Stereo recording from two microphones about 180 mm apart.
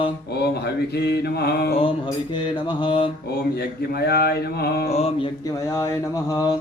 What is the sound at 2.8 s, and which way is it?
Mantra, 30° left (ahead or behind).